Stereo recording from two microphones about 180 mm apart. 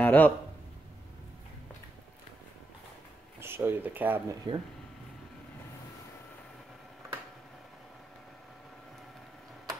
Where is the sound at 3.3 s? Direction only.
15° right (ahead or behind).